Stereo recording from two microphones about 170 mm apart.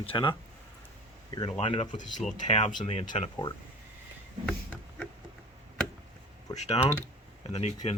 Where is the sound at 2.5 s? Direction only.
45° left (ahead or behind).